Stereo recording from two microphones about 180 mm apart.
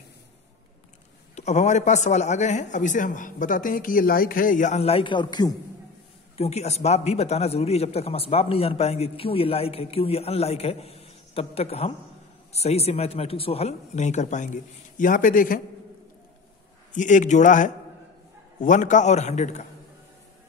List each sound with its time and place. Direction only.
1.3 s a man's voice: 40° left (ahead or behind); by 5.6 s 20° left (ahead or behind)
6.3 s a man's voice: 35° left (ahead or behind)
16.9 s a man's voice: 45° left (ahead or behind)